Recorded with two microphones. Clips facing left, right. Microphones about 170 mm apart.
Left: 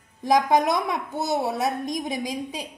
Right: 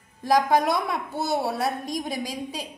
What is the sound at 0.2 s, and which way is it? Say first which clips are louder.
A woman's voice: left 1 dB; 20° left (ahead or behind).